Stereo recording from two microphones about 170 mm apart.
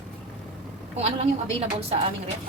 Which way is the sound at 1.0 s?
35° right (ahead or behind).